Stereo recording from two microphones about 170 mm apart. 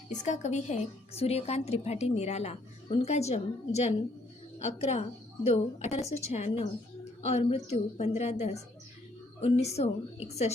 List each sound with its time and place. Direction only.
0.1 s a woman's voice: 45° left (ahead or behind)